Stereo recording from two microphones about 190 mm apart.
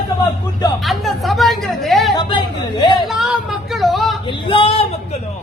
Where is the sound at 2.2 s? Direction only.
25° left (ahead or behind).